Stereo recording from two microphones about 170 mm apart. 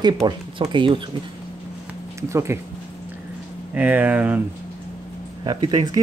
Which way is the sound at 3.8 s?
10° right (ahead or behind).